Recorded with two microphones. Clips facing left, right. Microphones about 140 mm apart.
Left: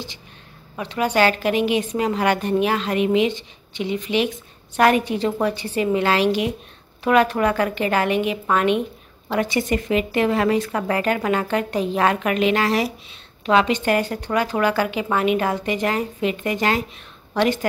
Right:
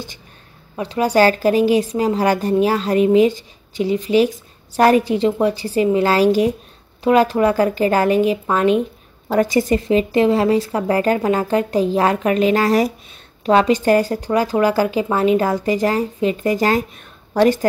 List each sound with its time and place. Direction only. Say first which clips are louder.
0.7 s a woman's voice: right 4 dB; 30° right (ahead or behind)